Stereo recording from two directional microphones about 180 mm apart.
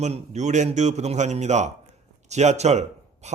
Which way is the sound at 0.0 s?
40° right (ahead or behind).